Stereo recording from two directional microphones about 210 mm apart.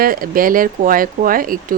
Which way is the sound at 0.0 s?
45° right (ahead or behind).